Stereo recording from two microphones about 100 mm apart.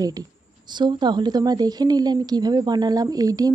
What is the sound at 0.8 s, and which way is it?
Speech, 50° right (ahead or behind).